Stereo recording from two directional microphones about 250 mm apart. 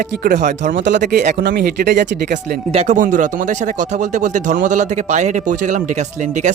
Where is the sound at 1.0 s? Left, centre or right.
Right.